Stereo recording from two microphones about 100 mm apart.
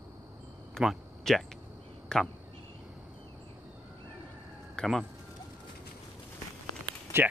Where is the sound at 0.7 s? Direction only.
Centre (ahead or behind).